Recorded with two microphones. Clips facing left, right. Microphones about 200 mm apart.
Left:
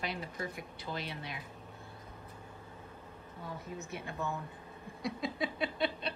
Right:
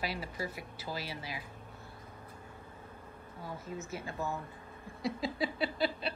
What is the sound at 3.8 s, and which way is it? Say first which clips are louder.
Speech: right 1 dB; centre (ahead or behind).